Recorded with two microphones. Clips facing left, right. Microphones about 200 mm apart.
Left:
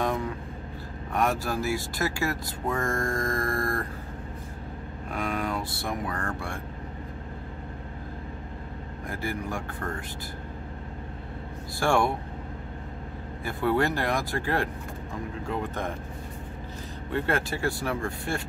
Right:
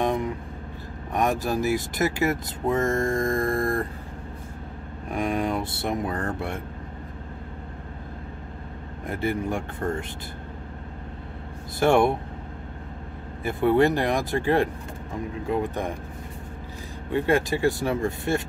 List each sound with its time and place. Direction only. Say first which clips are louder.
0.0 s vehicle: right 3 dB; 20° right (ahead or behind)
1.1 s speech: right 3 dB; 20° right (ahead or behind)
5.1 s speech: right 5 dB; 20° right (ahead or behind)
9.0 s speech: right 6 dB; 25° right (ahead or behind)
11.8 s speech: right 5 dB; 20° right (ahead or behind)
13.4 s speech: right 6 dB; 20° right (ahead or behind)
17.1 s speech: right 5 dB; 15° right (ahead or behind)